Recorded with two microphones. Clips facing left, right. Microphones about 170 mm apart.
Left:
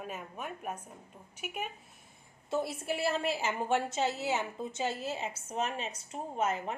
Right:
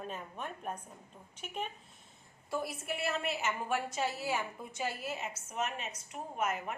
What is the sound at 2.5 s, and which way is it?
A woman's voice, 25° left (ahead or behind).